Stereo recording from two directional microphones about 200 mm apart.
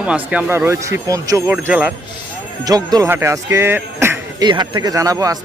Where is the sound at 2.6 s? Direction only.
20° right (ahead or behind).